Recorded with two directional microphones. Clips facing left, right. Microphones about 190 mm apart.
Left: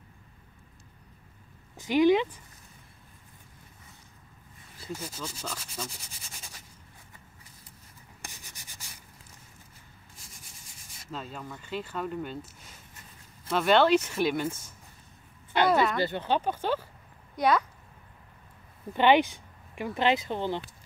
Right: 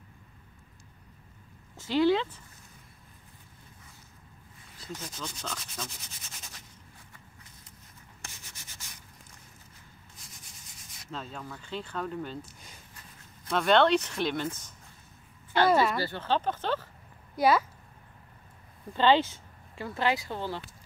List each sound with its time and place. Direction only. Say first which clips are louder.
1.8 s speech: left 3 dB; 15° left (ahead or behind)
4.7 s rub: left 3 dB; 5° left (ahead or behind)
8.2 s sanding: left 2 dB; 15° left (ahead or behind)
11.0 s speech: left 1 dB; 5° left (ahead or behind)
15.7 s a sound: even; 5° right (ahead or behind)
16.0 s speech: left 2 dB; 20° left (ahead or behind)
17.4 s speech: right 1 dB; 5° right (ahead or behind)
18.9 s speech: left 2 dB; 15° left (ahead or behind)